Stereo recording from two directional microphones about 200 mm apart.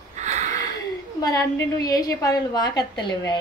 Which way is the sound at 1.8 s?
15° left (ahead or behind).